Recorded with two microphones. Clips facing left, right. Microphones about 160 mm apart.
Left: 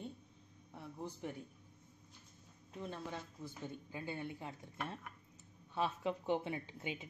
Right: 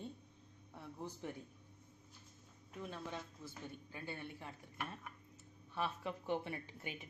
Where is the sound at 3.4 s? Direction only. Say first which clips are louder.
Left 3 dB; 15° left (ahead or behind).